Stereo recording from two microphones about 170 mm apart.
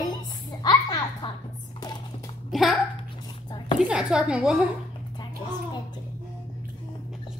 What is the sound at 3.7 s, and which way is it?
Speech, 5° right (ahead or behind).